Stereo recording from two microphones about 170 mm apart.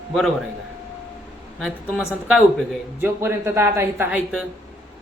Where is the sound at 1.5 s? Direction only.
Centre (ahead or behind).